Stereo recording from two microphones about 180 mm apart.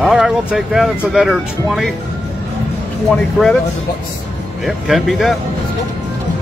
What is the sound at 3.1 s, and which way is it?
Speech, 5° left (ahead or behind).